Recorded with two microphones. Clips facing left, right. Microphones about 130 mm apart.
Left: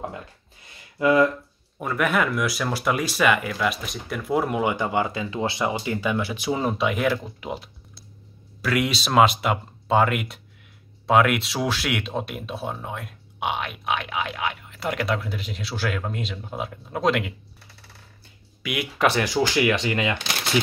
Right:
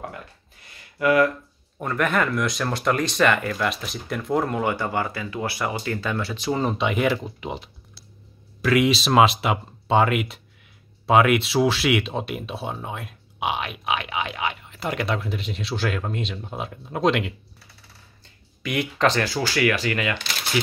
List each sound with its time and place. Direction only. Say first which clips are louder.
0.9 s speech: even; 25° left (ahead or behind)
1.8 s speech: even; 5° left (ahead or behind)
18.6 s speech: right 1 dB; 5° left (ahead or behind); by 20.2 s 20° left (ahead or behind)